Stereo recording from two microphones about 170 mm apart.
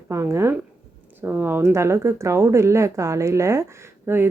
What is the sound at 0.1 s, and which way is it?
Speech, 15° right (ahead or behind).